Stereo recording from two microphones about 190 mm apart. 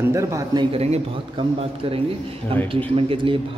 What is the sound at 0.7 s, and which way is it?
Speech, 30° right (ahead or behind).